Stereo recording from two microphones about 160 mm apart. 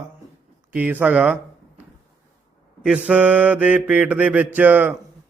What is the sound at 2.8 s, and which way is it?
A man's voice, 5° right (ahead or behind).